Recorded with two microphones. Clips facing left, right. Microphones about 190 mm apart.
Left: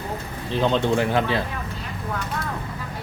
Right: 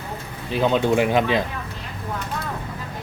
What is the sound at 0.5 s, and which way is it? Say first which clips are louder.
Speech: right 2 dB; 10° right (ahead or behind).